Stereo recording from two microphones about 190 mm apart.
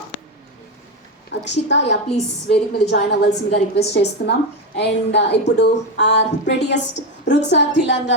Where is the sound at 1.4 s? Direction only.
65° left (ahead or behind).